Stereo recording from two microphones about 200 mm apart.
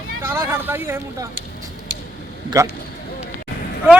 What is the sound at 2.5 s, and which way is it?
Speech, 15° right (ahead or behind).